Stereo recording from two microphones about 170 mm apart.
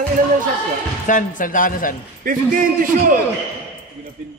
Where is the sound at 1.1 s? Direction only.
50° left (ahead or behind).